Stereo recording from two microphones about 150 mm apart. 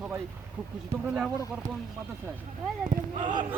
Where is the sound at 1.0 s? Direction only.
5° right (ahead or behind).